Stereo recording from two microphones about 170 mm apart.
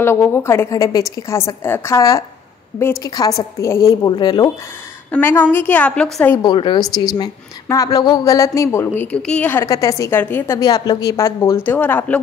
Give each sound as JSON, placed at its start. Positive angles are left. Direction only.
{"t": 0.0, "sound": "a woman's voice", "side_deg": 15}
{"t": 5.1, "sound": "a woman's voice", "side_deg": 10}
{"t": 6.4, "sound": "a woman's voice", "side_deg": 30}